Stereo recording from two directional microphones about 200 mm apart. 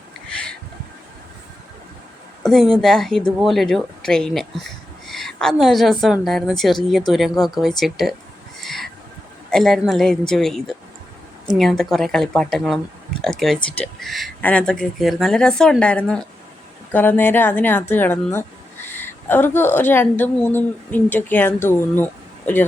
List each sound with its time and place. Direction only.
2.4 s a woman's voice: centre (ahead or behind)
8.6 s owl: centre (ahead or behind)
9.5 s speech: centre (ahead or behind)